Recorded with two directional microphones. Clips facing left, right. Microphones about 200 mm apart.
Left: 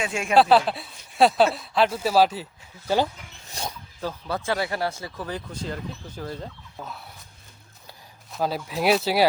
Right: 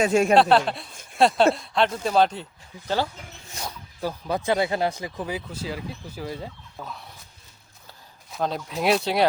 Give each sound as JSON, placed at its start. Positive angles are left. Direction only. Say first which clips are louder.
{"t": 0.0, "sound": "speech", "louder": "right 8 dB", "side_deg": -40}
{"t": 0.3, "sound": "speech", "louder": "even", "side_deg": 0}
{"t": 3.6, "sound": "speech", "louder": "left 2 dB", "side_deg": 35}
{"t": 4.0, "sound": "speech", "louder": "right 3 dB", "side_deg": -15}
{"t": 6.7, "sound": "speech", "louder": "even", "side_deg": 5}
{"t": 8.3, "sound": "speech", "louder": "left 1 dB", "side_deg": 5}